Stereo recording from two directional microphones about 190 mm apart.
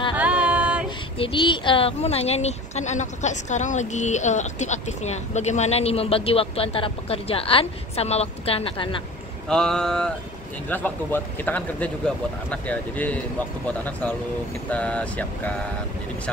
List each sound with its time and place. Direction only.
0.1 s music: 5° right (ahead or behind)
0.8 s speech: 25° left (ahead or behind)
9.5 s a sound: 5° left (ahead or behind)
10.7 s speech: 10° left (ahead or behind)
14.7 s speech: 5° left (ahead or behind)